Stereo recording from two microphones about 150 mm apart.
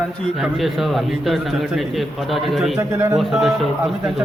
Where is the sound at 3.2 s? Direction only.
Centre (ahead or behind).